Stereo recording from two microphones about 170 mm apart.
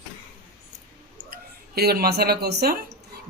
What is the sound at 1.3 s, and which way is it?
A man's voice, 65° right (ahead or behind).